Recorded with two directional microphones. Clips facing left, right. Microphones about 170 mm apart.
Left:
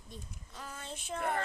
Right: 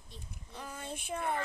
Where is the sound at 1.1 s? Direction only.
60° left (ahead or behind).